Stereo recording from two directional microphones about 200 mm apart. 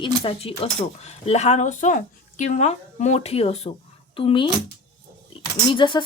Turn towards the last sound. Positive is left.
turn(degrees=25)  # may be behind; listen again after turning